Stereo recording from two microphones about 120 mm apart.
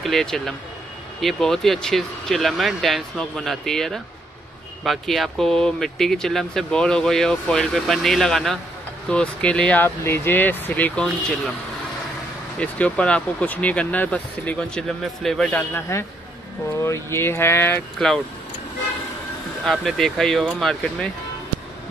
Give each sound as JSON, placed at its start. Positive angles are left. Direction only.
{"t": 0.0, "sound": "speech", "side_deg": 5}
{"t": 12.5, "sound": "speech", "side_deg": 10}
{"t": 16.8, "sound": "speech", "side_deg": 20}
{"t": 17.9, "sound": "speech", "side_deg": 5}
{"t": 19.6, "sound": "speech", "side_deg": 0}